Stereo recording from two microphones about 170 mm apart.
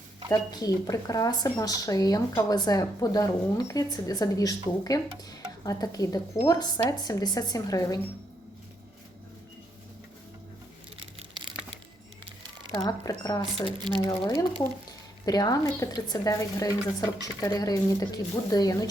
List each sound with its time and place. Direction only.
0.3 s speech: 20° left (ahead or behind)
10.9 s tearing: 30° right (ahead or behind)
13.1 s speech: 20° left (ahead or behind)
13.7 s speech: 25° right (ahead or behind)
14.1 s speech: 20° left (ahead or behind)